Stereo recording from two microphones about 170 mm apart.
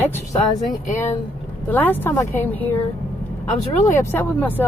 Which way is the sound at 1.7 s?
10° left (ahead or behind).